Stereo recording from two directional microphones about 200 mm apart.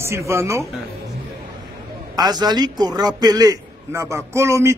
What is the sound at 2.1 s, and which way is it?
A man's voice, 20° right (ahead or behind).